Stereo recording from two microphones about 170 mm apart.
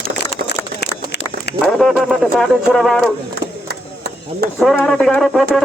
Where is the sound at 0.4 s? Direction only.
80° left.